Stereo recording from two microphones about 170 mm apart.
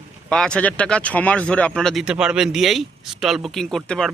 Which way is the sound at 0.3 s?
5° left (ahead or behind).